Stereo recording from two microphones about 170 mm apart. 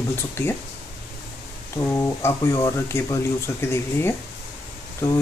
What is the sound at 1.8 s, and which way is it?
Speech, 10° left (ahead or behind).